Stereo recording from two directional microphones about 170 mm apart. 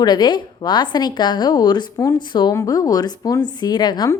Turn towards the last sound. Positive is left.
turn(degrees=25)  # may be behind; listen again after turning